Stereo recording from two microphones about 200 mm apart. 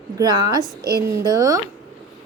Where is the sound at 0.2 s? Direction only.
20° right (ahead or behind).